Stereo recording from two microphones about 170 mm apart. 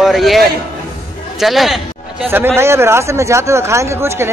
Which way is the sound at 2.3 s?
15° right (ahead or behind).